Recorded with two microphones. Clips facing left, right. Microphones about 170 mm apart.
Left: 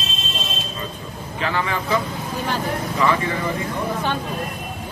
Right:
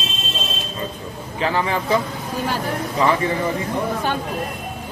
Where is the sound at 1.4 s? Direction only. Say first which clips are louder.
Right 3 dB; 30° right (ahead or behind).